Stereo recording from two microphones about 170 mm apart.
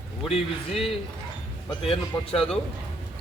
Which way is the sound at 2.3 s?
5° left (ahead or behind).